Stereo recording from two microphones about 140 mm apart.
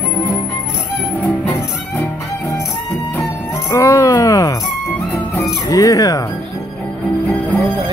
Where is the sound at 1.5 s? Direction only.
20° left (ahead or behind).